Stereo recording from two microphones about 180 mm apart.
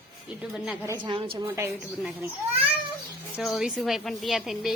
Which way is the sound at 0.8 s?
25° right (ahead or behind).